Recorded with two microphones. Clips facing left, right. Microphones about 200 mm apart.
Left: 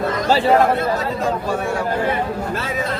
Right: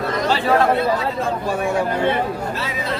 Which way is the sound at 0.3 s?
40° left (ahead or behind).